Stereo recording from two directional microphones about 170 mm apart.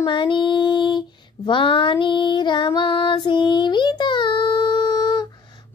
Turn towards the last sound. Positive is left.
turn(degrees=25)  # may be behind; listen again after turning